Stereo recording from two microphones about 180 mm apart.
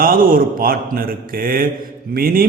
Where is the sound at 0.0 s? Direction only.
50° right (ahead or behind).